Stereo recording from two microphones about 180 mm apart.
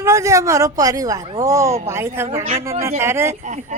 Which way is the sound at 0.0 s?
15° right (ahead or behind).